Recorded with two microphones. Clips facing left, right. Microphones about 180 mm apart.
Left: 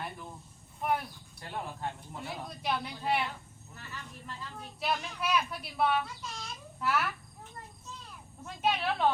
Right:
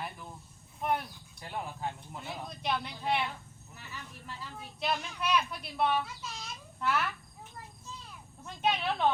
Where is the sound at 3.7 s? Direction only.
5° right (ahead or behind).